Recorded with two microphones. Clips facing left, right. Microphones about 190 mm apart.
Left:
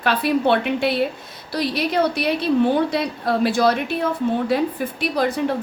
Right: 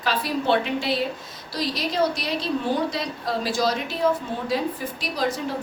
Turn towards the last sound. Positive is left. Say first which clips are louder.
# left 6 dB
turn(degrees=60)  # may be behind; listen again after turning